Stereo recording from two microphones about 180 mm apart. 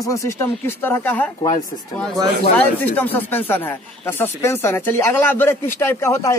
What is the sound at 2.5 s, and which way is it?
Speech, 10° left (ahead or behind).